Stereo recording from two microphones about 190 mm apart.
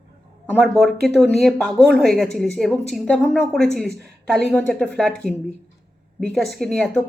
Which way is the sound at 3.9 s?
60° right (ahead or behind).